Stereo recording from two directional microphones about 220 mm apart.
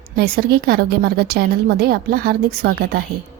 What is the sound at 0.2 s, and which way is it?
A woman's voice, 45° right (ahead or behind).